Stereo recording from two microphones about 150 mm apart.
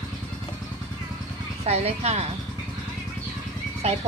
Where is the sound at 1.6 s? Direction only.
45° right (ahead or behind).